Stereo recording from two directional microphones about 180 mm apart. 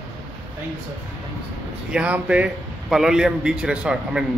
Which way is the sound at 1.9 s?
5° right (ahead or behind).